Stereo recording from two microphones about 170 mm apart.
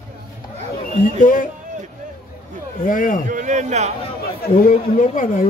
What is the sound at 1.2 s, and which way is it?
Speech, 50° left (ahead or behind).